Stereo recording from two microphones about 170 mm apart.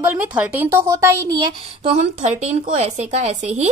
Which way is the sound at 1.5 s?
40° right (ahead or behind).